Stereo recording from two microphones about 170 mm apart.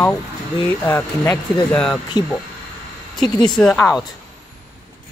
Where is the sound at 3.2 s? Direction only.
25° left (ahead or behind).